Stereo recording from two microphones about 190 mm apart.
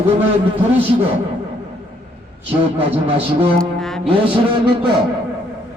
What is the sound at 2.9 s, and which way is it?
Speech, 30° right (ahead or behind).